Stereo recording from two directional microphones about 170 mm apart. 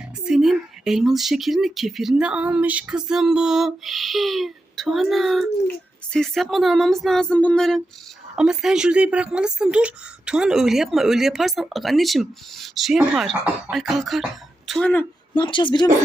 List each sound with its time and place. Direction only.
0.3 s a woman's voice: centre (ahead or behind)
15.4 s a woman's voice: 30° left (ahead or behind)